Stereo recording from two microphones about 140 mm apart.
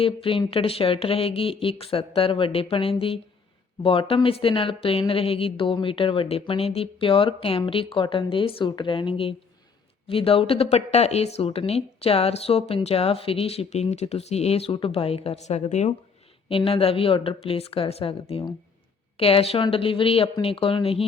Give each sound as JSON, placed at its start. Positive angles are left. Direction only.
{"t": 0.0, "sound": "a woman's voice", "side_deg": 40}
{"t": 16.5, "sound": "a woman's voice", "side_deg": 45}